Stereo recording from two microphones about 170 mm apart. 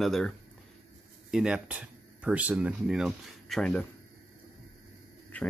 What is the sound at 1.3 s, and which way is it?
Speech, 5° right (ahead or behind).